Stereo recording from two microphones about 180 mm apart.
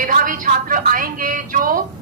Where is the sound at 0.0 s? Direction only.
50° right (ahead or behind).